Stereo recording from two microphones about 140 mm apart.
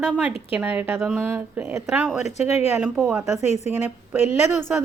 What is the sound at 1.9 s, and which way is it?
Speech, 5° right (ahead or behind).